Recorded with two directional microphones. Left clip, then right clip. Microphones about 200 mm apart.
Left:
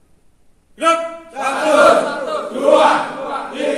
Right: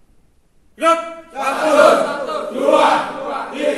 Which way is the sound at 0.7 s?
15° left (ahead or behind).